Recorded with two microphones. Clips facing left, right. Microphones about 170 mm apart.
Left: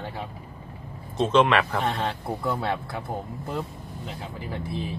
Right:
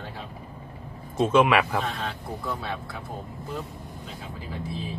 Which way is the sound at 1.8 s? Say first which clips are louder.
Left 5 dB; 65° left (ahead or behind).